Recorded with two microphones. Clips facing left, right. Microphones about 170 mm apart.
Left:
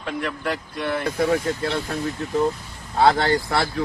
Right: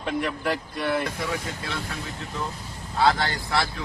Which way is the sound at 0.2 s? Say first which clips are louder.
Even; 5° right (ahead or behind).